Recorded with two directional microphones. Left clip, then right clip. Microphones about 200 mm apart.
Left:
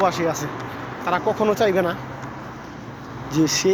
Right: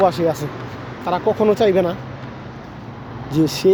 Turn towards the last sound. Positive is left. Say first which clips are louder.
# right 3 dB
turn(degrees=-20)  # may be behind; listen again after turning